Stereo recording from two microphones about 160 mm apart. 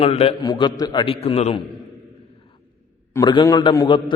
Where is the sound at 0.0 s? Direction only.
40° left (ahead or behind).